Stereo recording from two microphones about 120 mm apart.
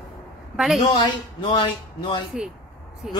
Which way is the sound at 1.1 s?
40° left (ahead or behind).